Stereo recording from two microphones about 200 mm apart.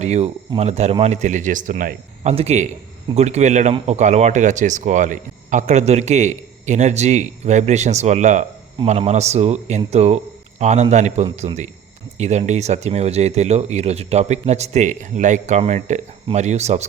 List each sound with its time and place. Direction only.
0.0 s speech: 35° right (ahead or behind)